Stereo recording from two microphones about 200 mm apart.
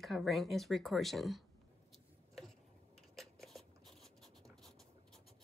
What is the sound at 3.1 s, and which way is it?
Writing, centre (ahead or behind).